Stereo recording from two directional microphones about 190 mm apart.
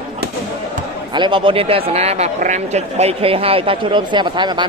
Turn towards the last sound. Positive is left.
turn(degrees=-25)  # may be behind; listen again after turning